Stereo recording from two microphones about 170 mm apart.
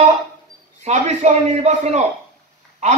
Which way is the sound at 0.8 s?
45° right (ahead or behind).